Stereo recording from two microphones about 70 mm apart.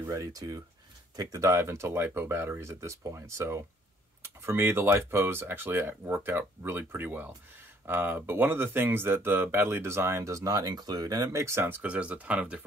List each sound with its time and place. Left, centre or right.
0.0 s speech: right
11.2 s speech: right
11.7 s speech: centre